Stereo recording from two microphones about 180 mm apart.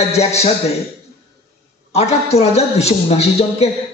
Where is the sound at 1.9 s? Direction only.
35° left (ahead or behind).